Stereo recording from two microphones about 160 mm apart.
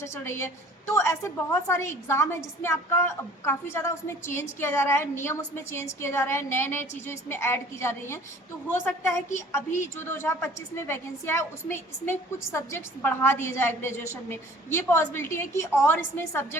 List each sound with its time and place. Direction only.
0.0 s a woman's voice: 15° left (ahead or behind)